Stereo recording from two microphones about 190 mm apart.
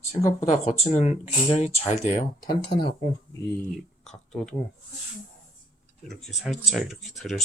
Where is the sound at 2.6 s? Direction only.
60° left (ahead or behind).